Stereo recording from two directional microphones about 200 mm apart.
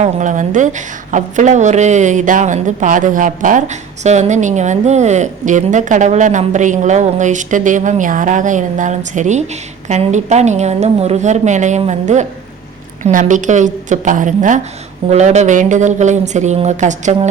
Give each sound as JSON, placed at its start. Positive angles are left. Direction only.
{"t": 0.0, "sound": "a woman's voice", "side_deg": -40}